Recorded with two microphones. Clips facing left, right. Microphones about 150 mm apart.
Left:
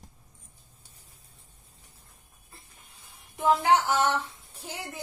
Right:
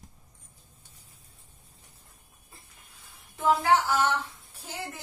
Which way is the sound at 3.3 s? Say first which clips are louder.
Left 1 dB; 20° left (ahead or behind).